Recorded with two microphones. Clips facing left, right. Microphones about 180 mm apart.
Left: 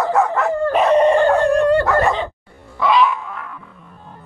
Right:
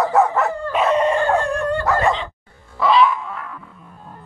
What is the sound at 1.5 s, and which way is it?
Dog, 70° left (ahead or behind).